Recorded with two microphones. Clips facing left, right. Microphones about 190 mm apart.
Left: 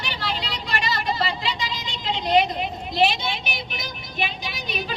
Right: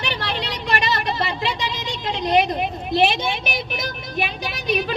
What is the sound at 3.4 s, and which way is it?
Vehicle, 55° right (ahead or behind).